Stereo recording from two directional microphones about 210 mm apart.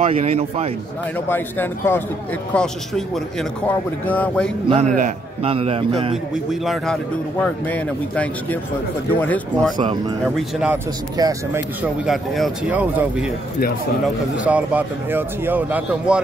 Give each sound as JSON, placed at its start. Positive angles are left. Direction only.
{"t": 0.0, "sound": "a man's voice", "side_deg": -30}
{"t": 1.3, "sound": "a man's voice", "side_deg": 10}
{"t": 4.6, "sound": "a man's voice", "side_deg": -30}
{"t": 6.3, "sound": "a man's voice", "side_deg": 0}
{"t": 9.8, "sound": "a man's voice", "side_deg": -20}
{"t": 10.2, "sound": "a man's voice", "side_deg": 0}
{"t": 11.1, "sound": "a man's voice", "side_deg": -15}
{"t": 12.1, "sound": "a man's voice", "side_deg": 0}